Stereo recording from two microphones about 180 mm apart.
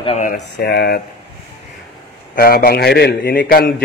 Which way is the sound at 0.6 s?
60° left (ahead or behind).